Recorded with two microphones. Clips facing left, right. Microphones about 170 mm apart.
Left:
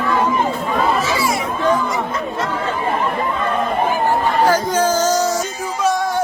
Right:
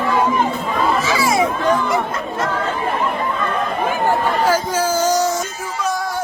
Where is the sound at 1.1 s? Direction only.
90° right.